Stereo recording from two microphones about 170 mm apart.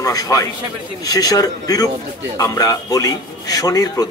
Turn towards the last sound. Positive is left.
turn(degrees=20)  # may be behind; listen again after turning